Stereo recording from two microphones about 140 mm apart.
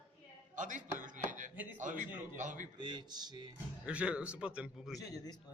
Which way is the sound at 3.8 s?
10° right (ahead or behind).